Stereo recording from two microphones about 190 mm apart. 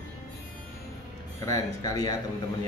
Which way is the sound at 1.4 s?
20° left (ahead or behind).